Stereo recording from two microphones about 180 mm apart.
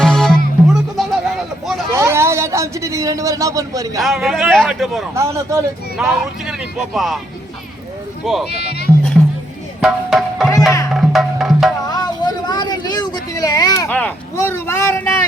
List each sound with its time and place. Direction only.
0.0 s music: 5° left (ahead or behind)
1.9 s speech: 15° right (ahead or behind)
4.0 s speech: centre (ahead or behind)
5.1 s speech: 15° right (ahead or behind)
6.0 s speech: 5° right (ahead or behind)
8.2 s speech: centre (ahead or behind)
8.4 s speech: 65° left (ahead or behind)
9.8 s tabla: centre (ahead or behind)
10.9 s music: centre (ahead or behind)
11.9 s a sound: 25° left (ahead or behind)